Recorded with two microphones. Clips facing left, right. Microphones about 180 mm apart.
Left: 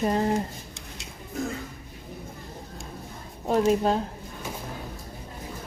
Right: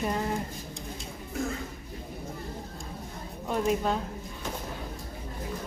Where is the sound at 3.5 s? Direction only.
40° left (ahead or behind).